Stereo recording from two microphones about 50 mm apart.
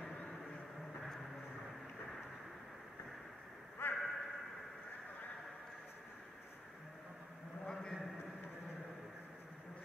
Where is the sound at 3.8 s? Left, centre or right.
Left.